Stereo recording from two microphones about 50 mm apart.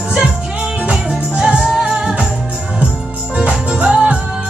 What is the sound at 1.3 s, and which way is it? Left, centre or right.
Music, centre.